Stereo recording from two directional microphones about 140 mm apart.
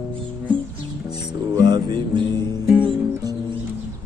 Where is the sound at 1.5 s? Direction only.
30° right (ahead or behind).